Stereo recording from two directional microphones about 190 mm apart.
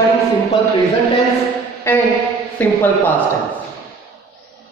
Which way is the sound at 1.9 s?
10° left (ahead or behind).